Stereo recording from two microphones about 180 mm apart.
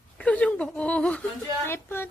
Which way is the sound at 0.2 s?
5° left (ahead or behind).